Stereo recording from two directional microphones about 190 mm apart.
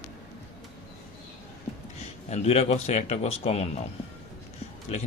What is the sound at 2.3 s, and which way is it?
Speech, 35° left (ahead or behind).